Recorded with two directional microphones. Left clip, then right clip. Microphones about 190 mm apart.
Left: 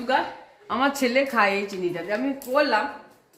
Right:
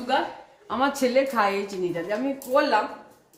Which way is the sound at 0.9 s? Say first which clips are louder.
Even; 30° left (ahead or behind).